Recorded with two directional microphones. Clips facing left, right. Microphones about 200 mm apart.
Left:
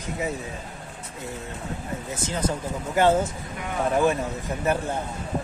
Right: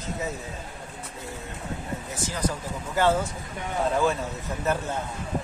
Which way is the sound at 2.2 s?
25° left (ahead or behind).